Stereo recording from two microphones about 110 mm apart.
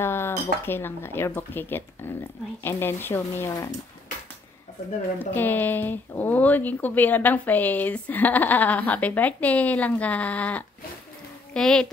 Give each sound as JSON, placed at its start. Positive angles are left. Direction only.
{"t": 0.0, "sound": "speech", "side_deg": 20}
{"t": 5.2, "sound": "a woman's voice", "side_deg": 20}